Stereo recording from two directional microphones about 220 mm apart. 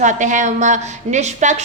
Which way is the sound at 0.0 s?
35° right (ahead or behind).